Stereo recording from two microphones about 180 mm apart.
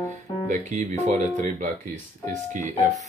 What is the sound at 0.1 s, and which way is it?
Speech, 40° right (ahead or behind).